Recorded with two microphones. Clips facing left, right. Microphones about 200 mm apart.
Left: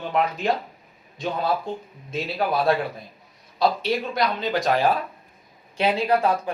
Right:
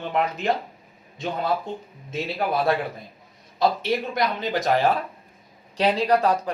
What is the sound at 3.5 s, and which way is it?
Speech, 20° right (ahead or behind).